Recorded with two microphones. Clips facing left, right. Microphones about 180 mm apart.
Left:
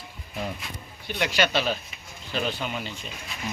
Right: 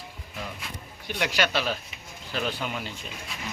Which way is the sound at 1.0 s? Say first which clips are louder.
Left 2 dB; 10° right (ahead or behind).